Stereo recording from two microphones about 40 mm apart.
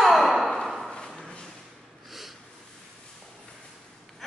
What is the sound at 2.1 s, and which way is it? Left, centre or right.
Snort, centre.